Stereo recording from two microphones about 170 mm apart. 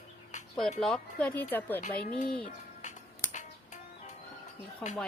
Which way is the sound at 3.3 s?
45° left (ahead or behind).